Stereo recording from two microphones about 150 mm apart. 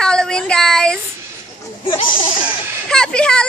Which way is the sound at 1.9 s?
35° left (ahead or behind).